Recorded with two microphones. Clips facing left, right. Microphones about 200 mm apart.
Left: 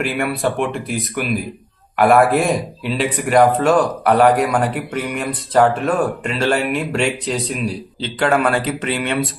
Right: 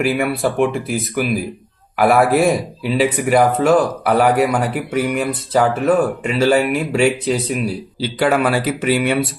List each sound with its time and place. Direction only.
0.0 s speech: 5° right (ahead or behind)